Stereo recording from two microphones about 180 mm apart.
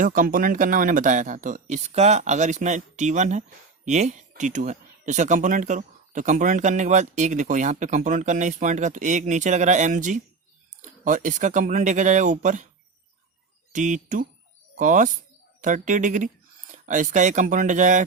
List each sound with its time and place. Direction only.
0.0 s speech: 50° right (ahead or behind)
13.7 s speech: 45° right (ahead or behind)